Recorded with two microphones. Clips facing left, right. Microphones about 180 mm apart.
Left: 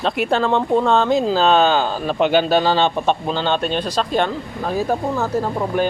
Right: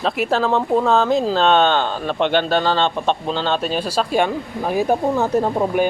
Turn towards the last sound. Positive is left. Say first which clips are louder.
# right 2 dB
turn(degrees=-20)  # may be behind; listen again after turning